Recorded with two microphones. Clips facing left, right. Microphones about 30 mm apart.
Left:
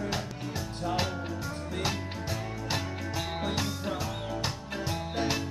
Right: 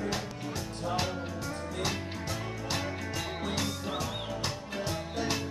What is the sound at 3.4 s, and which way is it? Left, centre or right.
Music, centre.